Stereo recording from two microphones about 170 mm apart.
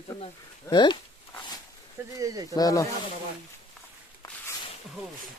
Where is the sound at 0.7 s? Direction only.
25° left (ahead or behind).